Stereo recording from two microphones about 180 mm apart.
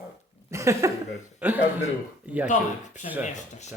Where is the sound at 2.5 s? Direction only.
40° left (ahead or behind).